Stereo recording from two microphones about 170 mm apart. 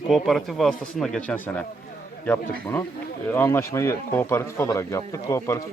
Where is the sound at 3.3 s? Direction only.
15° left (ahead or behind).